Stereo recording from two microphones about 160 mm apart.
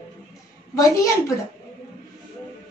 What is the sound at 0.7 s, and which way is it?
Speech, 20° left (ahead or behind).